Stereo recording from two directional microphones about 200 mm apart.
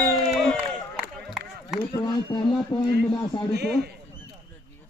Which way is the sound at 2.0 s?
25° left (ahead or behind).